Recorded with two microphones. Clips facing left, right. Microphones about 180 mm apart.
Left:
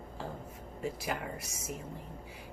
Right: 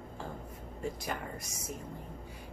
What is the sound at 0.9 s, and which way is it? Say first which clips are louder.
Speech: left 1 dB; 5° left (ahead or behind).